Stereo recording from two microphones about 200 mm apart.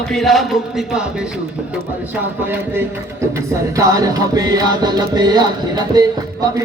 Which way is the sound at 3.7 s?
15° right (ahead or behind).